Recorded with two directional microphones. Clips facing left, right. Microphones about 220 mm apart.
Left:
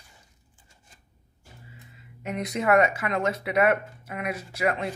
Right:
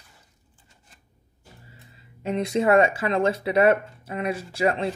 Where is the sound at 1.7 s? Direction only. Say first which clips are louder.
Left 1 dB; 30° right (ahead or behind).